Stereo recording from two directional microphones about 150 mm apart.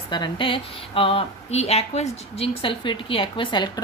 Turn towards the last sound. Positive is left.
turn(degrees=30)  # may be behind; listen again after turning